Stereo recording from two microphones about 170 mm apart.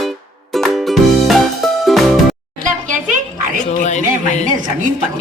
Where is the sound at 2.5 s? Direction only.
50° right (ahead or behind).